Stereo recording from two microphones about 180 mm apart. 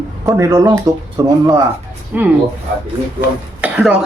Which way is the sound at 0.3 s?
15° right (ahead or behind).